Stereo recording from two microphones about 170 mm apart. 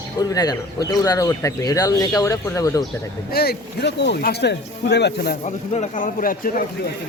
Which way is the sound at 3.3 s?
70° left (ahead or behind).